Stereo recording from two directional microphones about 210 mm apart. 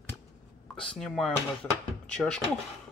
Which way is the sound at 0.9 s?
Centre (ahead or behind).